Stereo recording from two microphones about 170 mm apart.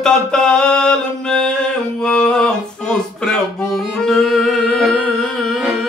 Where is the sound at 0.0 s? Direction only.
5° left (ahead or behind).